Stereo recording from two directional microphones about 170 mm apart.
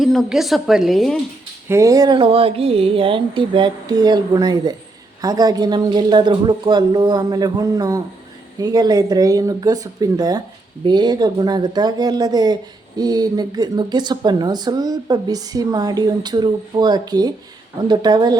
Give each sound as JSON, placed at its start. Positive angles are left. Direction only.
{"t": 0.0, "sound": "a woman's voice", "side_deg": 0}
{"t": 1.6, "sound": "speech", "side_deg": -15}